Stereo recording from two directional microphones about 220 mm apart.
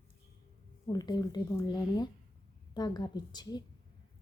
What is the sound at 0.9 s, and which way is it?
A woman's voice, 20° left (ahead or behind).